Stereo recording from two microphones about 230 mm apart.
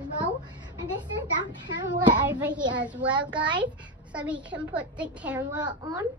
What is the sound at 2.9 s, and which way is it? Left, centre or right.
Speech, centre.